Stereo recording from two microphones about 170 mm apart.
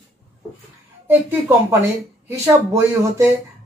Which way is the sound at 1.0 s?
10° right (ahead or behind).